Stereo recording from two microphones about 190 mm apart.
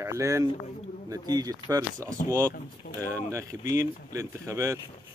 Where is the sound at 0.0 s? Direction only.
15° right (ahead or behind).